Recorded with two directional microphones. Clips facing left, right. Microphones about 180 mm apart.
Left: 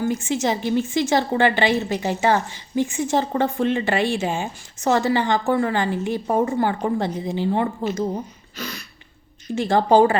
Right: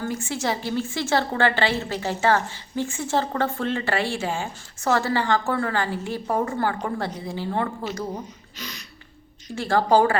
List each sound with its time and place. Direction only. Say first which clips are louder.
0.0 s a woman's voice: left 5 dB; 20° left (ahead or behind)
8.5 s a sound: left 7 dB; 50° left (ahead or behind)
9.6 s a woman's voice: left 3 dB; 20° left (ahead or behind)